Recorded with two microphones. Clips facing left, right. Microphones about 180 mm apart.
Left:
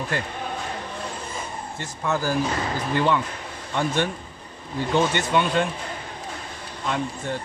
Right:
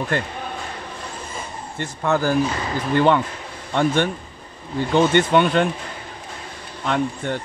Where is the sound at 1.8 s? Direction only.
60° right (ahead or behind).